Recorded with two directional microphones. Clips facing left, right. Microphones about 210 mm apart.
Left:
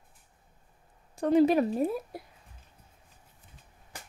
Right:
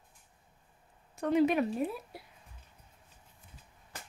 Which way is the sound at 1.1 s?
35° left (ahead or behind).